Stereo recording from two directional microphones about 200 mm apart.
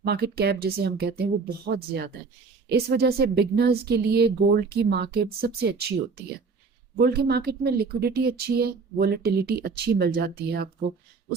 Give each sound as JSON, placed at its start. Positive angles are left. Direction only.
{"t": 0.0, "sound": "speech", "side_deg": -50}
{"t": 7.0, "sound": "speech", "side_deg": -50}